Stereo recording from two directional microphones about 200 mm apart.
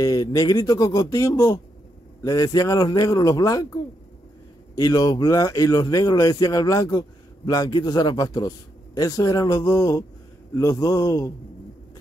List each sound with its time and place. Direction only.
0.0 s a man's voice: 20° left (ahead or behind)